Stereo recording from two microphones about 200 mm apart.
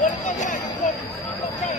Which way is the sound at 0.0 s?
40° left (ahead or behind).